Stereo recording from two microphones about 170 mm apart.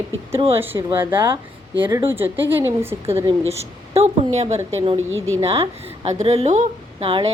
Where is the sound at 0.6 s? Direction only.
10° right (ahead or behind).